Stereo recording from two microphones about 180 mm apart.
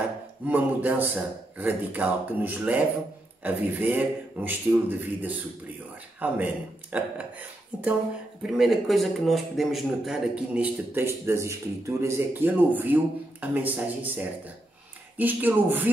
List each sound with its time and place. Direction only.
0.5 s a man's voice: 10° right (ahead or behind)